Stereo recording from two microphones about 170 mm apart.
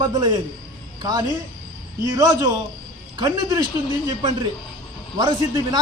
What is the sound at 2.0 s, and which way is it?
A man's voice, 20° right (ahead or behind).